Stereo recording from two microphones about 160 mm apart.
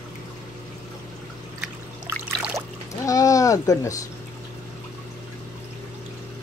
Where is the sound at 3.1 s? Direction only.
20° left (ahead or behind).